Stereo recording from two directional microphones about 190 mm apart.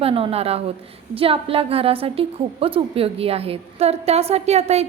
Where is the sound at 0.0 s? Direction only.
30° right (ahead or behind).